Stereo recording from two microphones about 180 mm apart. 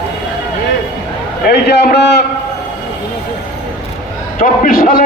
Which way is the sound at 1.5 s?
65° left (ahead or behind).